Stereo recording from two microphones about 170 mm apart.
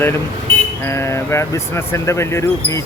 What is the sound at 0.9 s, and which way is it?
Speech, 15° left (ahead or behind).